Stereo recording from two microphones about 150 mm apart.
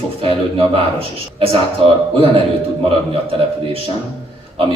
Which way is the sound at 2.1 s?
40° right (ahead or behind).